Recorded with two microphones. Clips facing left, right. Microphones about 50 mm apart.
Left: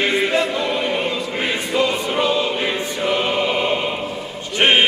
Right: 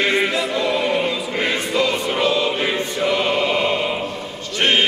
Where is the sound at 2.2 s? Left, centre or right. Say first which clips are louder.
Right 1 dB; centre.